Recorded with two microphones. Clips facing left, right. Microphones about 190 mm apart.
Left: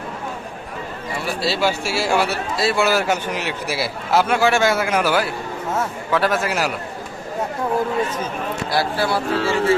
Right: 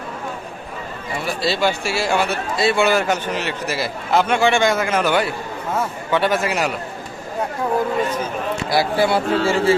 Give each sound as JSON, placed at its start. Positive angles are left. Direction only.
{"t": 1.4, "sound": "a man's voice", "side_deg": 5}
{"t": 8.7, "sound": "speech", "side_deg": -15}
{"t": 9.0, "sound": "speech", "side_deg": -25}